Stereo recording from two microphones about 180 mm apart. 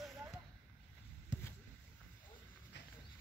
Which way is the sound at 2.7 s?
75° left (ahead or behind).